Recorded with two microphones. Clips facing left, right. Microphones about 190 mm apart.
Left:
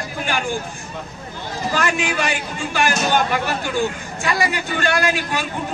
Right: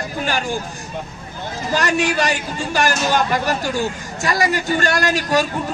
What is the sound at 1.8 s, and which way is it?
A man's voice, 40° right (ahead or behind).